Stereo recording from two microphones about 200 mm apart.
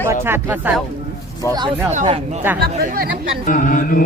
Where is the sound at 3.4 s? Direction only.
40° left (ahead or behind).